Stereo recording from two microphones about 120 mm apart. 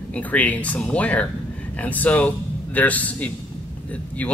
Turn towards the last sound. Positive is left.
turn(degrees=15)  # may be behind; listen again after turning